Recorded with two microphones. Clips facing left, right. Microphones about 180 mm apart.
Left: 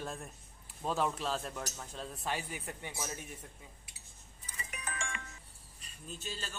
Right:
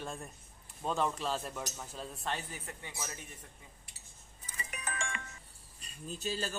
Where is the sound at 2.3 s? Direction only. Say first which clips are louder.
Left 1 dB; 10° left (ahead or behind).